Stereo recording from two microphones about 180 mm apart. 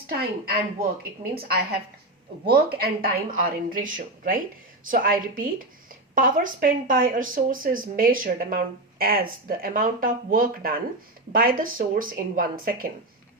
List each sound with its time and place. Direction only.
0.1 s speech: 55° right (ahead or behind)